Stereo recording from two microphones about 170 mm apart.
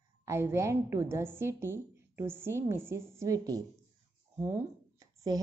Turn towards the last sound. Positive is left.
turn(degrees=-20)  # may be behind; listen again after turning